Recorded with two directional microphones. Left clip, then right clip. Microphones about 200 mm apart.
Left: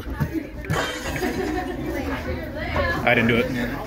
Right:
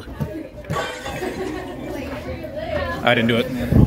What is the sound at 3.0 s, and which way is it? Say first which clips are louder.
Speech: right 2 dB; 25° right (ahead or behind).